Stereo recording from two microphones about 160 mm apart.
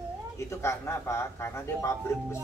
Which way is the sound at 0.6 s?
15° left (ahead or behind).